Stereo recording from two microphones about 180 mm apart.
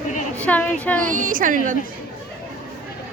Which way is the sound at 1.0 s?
50° right (ahead or behind).